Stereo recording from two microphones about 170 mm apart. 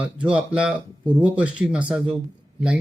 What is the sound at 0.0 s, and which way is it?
A man's voice, 5° right (ahead or behind).